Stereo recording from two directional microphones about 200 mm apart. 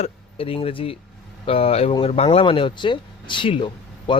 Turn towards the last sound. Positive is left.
turn(degrees=25)  # may be behind; listen again after turning